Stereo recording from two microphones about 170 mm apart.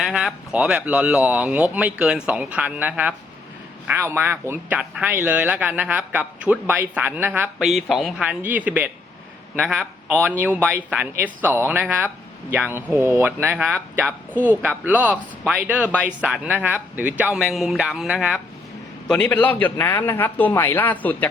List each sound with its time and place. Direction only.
0.0 s a man's voice: centre (ahead or behind)
10.3 s a man's voice: 10° right (ahead or behind); by 21.2 s 10° left (ahead or behind)